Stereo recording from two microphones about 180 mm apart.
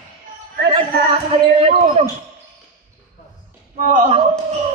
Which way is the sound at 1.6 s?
40° right (ahead or behind).